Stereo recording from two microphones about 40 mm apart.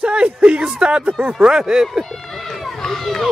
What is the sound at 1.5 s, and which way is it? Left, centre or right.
Speech, centre.